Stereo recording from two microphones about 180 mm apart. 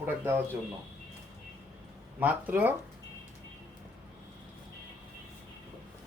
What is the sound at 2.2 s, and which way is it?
Speech, 10° right (ahead or behind).